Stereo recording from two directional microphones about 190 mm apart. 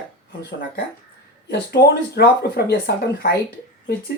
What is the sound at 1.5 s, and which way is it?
Speech, 60° left (ahead or behind).